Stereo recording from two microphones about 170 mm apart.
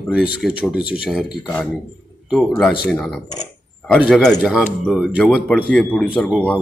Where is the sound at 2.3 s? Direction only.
Centre (ahead or behind).